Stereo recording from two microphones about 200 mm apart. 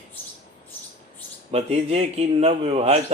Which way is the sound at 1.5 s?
30° right (ahead or behind).